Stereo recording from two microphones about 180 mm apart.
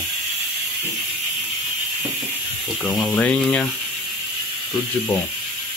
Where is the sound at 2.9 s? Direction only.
5° left (ahead or behind).